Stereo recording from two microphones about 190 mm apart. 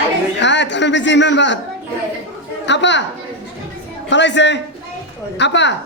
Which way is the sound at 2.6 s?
70° left (ahead or behind).